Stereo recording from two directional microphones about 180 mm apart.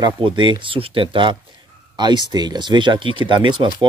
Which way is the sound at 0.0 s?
25° right (ahead or behind).